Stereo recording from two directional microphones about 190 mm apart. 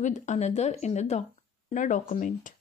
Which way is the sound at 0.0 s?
40° left (ahead or behind).